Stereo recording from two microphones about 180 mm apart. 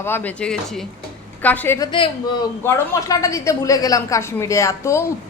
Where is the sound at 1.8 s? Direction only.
30° left (ahead or behind).